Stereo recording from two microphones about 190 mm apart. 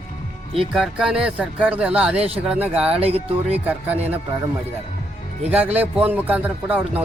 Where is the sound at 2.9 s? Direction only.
30° right (ahead or behind).